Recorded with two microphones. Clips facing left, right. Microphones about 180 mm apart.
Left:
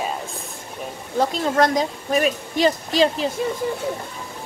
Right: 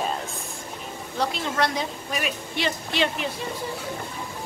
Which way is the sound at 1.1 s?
45° left (ahead or behind).